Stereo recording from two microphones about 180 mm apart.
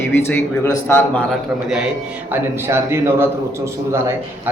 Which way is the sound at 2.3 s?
15° right (ahead or behind).